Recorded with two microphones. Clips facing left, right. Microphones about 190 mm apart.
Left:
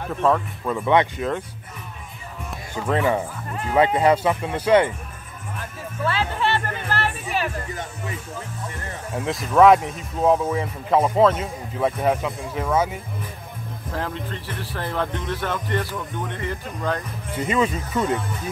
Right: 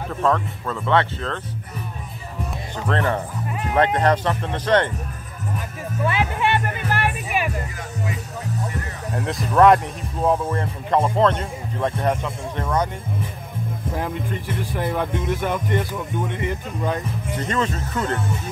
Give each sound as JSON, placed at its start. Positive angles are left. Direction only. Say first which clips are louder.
{"t": 0.1, "sound": "speech", "louder": "left 1 dB", "side_deg": 5}
{"t": 2.7, "sound": "speech", "louder": "left 2 dB", "side_deg": 10}
{"t": 3.4, "sound": "speech", "louder": "right 2 dB", "side_deg": -5}
{"t": 3.7, "sound": "speech", "louder": "left 1 dB", "side_deg": 5}
{"t": 6.0, "sound": "music", "louder": "right 1 dB", "side_deg": -15}
{"t": 9.1, "sound": "speech", "louder": "even", "side_deg": 0}
{"t": 13.9, "sound": "speech", "louder": "right 1 dB", "side_deg": -15}
{"t": 17.4, "sound": "speech", "louder": "left 3 dB", "side_deg": 10}